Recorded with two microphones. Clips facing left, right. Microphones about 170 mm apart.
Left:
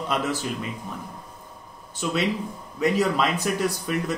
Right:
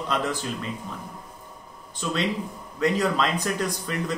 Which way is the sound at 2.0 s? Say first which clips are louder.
Left 2 dB; 10° left (ahead or behind).